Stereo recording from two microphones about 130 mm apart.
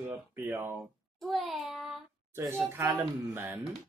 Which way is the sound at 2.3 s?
20° right (ahead or behind).